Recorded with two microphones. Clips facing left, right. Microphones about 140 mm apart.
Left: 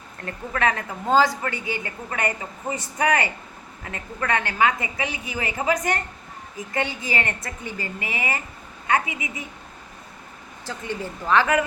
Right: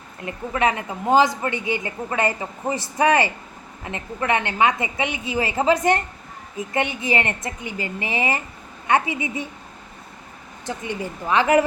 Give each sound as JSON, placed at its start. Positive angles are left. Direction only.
{"t": 0.2, "sound": "a woman's voice", "side_deg": -15}
{"t": 10.7, "sound": "speech", "side_deg": -15}